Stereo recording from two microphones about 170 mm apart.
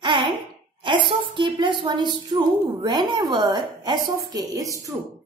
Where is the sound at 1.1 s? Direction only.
30° right (ahead or behind).